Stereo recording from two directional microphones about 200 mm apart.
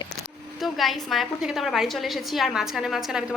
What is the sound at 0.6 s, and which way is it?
A woman's voice, centre (ahead or behind).